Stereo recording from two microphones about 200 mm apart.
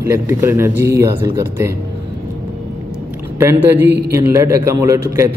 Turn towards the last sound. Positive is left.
turn(degrees=-15)  # may be behind; listen again after turning